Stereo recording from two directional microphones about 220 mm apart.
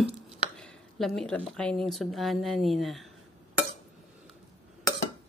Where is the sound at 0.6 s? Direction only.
Centre (ahead or behind).